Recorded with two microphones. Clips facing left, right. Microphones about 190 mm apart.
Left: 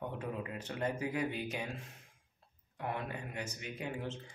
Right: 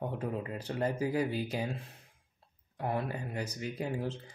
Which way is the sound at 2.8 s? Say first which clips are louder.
Right 5 dB; 35° right (ahead or behind).